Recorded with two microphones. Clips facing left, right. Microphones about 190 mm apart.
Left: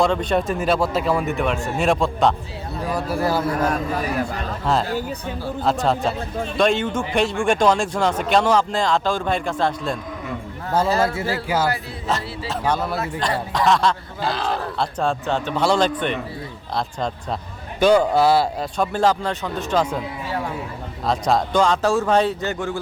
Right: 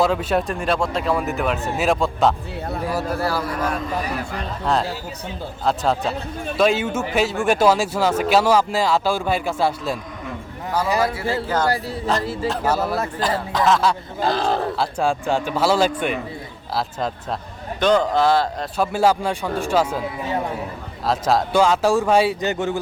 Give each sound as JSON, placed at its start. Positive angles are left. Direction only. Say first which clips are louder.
{"t": 0.0, "sound": "speech", "louder": "even", "side_deg": -5}
{"t": 3.1, "sound": "a man's voice", "louder": "left 2 dB", "side_deg": 20}
{"t": 4.6, "sound": "speech", "louder": "left 1 dB", "side_deg": 0}
{"t": 11.4, "sound": "a man's voice", "louder": "even", "side_deg": 10}
{"t": 12.5, "sound": "speech", "louder": "right 1 dB", "side_deg": -5}
{"t": 14.2, "sound": "speech", "louder": "right 3 dB", "side_deg": -45}
{"t": 14.8, "sound": "a man's voice", "louder": "right 1 dB", "side_deg": -10}
{"t": 17.7, "sound": "a man's voice", "louder": "left 2 dB", "side_deg": 10}
{"t": 18.8, "sound": "a man's voice", "louder": "right 1 dB", "side_deg": -10}
{"t": 21.1, "sound": "a man's voice", "louder": "right 1 dB", "side_deg": 0}